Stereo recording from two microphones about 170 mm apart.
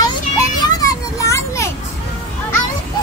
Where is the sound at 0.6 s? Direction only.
20° left (ahead or behind).